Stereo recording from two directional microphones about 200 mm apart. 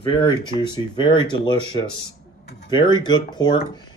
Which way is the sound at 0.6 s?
20° left (ahead or behind).